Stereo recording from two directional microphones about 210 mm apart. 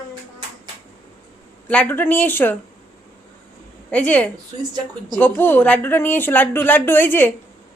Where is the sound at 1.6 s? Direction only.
5° left (ahead or behind).